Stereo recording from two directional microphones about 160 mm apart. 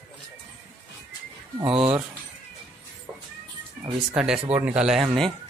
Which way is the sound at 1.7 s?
35° right (ahead or behind).